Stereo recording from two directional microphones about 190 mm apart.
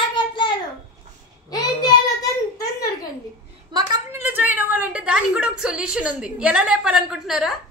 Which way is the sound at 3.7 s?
20° right (ahead or behind).